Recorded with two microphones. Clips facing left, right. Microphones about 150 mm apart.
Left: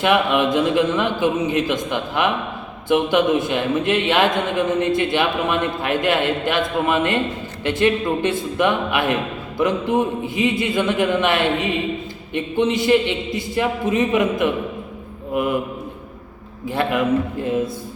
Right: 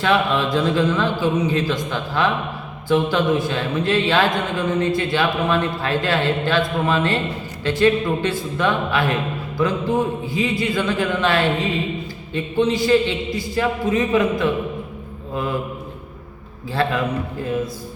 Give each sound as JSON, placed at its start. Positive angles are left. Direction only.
{"t": 0.0, "sound": "a man's voice", "side_deg": 20}
{"t": 16.6, "sound": "a man's voice", "side_deg": 20}